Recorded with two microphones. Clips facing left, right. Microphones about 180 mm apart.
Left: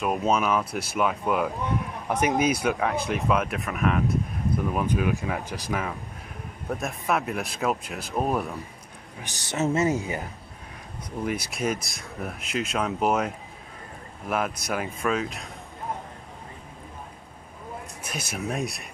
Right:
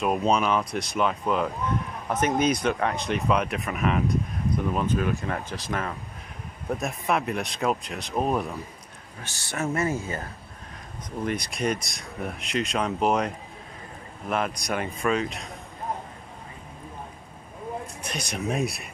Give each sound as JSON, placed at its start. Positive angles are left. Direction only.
{"t": 0.0, "sound": "speech", "side_deg": 0}
{"t": 4.7, "sound": "speech", "side_deg": 10}
{"t": 9.2, "sound": "speech", "side_deg": 20}
{"t": 18.0, "sound": "speech", "side_deg": 5}